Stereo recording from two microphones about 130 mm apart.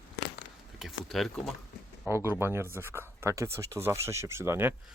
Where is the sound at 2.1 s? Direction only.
20° right (ahead or behind).